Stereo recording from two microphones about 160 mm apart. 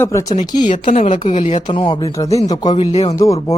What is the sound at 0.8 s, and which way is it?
Speech, 45° left (ahead or behind).